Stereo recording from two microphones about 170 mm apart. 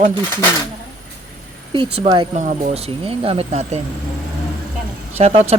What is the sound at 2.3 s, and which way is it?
Speech, 45° right (ahead or behind).